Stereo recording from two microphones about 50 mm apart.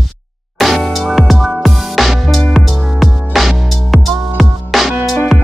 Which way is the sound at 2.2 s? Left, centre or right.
Centre.